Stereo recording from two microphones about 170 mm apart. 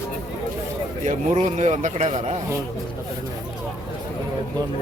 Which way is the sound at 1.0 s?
45° right (ahead or behind).